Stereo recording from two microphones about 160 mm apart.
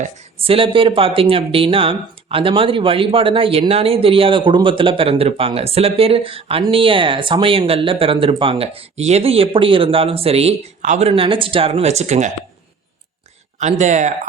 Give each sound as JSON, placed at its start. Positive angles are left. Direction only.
{"t": 0.0, "sound": "speech", "side_deg": -35}
{"t": 13.6, "sound": "speech", "side_deg": -45}